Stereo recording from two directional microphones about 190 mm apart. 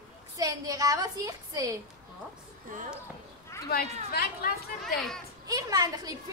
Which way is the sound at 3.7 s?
55° left (ahead or behind).